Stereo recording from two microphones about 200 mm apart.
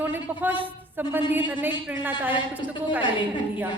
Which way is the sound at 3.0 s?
25° left (ahead or behind).